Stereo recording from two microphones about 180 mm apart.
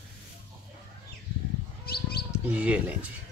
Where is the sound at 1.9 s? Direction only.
60° left (ahead or behind).